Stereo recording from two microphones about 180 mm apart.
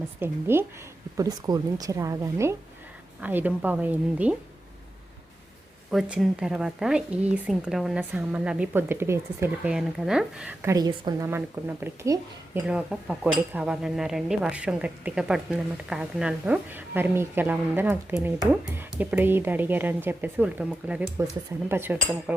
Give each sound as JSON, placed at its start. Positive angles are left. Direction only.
{"t": 0.2, "sound": "speech", "side_deg": -10}
{"t": 5.9, "sound": "a woman's voice", "side_deg": 0}
{"t": 12.6, "sound": "a woman's voice", "side_deg": -5}